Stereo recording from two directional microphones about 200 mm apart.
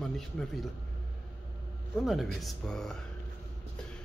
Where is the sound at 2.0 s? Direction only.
Centre (ahead or behind).